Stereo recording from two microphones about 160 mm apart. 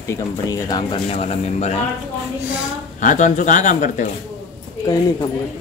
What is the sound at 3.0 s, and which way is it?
Speech, 55° left (ahead or behind).